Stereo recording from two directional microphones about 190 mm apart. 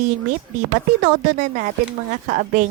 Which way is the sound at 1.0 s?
45° right (ahead or behind).